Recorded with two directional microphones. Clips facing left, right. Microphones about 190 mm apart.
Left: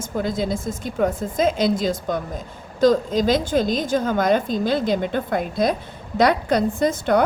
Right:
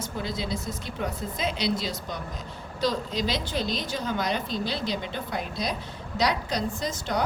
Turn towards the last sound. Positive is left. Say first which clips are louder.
# left 10 dB
turn(degrees=55)  # may be behind; listen again after turning